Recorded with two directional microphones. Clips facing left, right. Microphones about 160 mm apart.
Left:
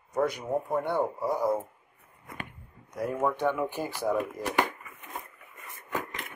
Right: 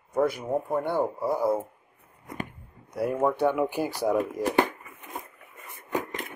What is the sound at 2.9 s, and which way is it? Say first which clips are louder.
Speech: right 3 dB; 10° right (ahead or behind).